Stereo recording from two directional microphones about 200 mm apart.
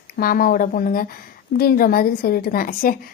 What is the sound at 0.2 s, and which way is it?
A woman's voice, 45° left (ahead or behind).